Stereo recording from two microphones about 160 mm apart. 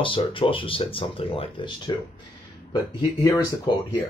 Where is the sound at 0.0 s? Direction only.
30° left (ahead or behind).